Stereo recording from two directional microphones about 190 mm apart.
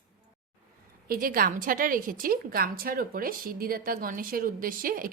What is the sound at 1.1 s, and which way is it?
A woman's voice, 50° right (ahead or behind).